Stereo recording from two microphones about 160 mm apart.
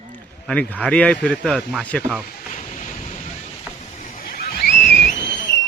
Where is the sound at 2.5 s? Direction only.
50° left (ahead or behind).